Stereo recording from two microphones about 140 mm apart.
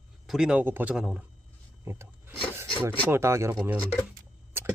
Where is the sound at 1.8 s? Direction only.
20° right (ahead or behind).